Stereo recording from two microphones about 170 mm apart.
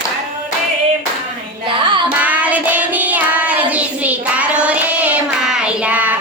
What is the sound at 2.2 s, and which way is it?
Child singing, 10° right (ahead or behind).